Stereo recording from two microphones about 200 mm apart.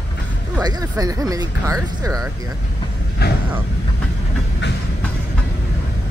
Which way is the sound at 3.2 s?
55° left (ahead or behind).